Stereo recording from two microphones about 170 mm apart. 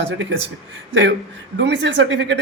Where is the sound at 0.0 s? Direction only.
90° right.